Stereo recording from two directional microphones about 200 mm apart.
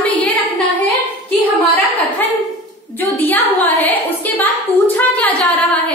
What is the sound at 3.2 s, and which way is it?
A woman's voice, 10° left (ahead or behind).